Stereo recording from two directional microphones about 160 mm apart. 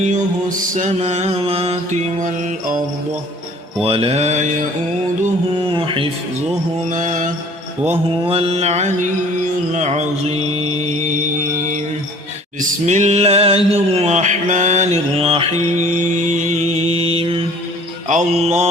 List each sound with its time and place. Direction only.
0.0 s mantra: 50° right (ahead or behind)
3.8 s mantra: 35° right (ahead or behind)
5.7 s mantra: 35° right (ahead or behind)
6.9 s mantra: 55° right (ahead or behind)
7.9 s mantra: 35° right (ahead or behind)
12.5 s a sound: 50° right (ahead or behind)
15.8 s mantra: 50° right (ahead or behind)